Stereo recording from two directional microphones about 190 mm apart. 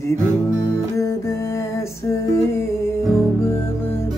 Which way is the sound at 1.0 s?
15° left (ahead or behind).